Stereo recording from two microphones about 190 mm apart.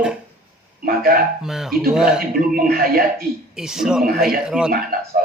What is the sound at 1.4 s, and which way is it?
Speech, centre (ahead or behind).